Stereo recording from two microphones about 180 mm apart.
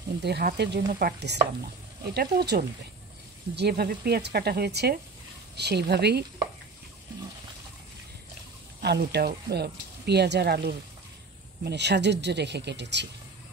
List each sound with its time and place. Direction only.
0.2 s speech: 60° right (ahead or behind)
8.8 s speech: 65° right (ahead or behind)